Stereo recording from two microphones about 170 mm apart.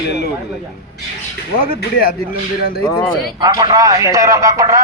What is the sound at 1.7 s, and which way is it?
Speech, 60° left (ahead or behind).